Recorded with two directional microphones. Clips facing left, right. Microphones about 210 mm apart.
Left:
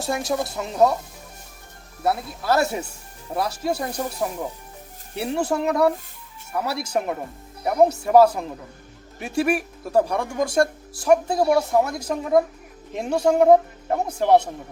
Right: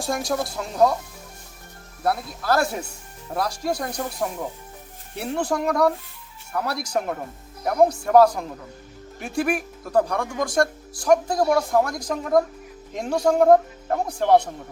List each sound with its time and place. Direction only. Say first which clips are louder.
0.0 s speech: left 1 dB; 5° left (ahead or behind)
2.0 s speech: left 1 dB; centre (ahead or behind)
10.3 s speech: left 2 dB; 25° left (ahead or behind)
11.0 s speech: left 1 dB; 5° left (ahead or behind)